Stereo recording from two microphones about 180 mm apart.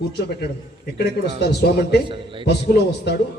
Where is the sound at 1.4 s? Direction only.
70° left (ahead or behind).